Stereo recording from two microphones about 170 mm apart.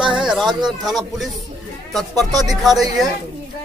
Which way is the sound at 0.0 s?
5° right (ahead or behind).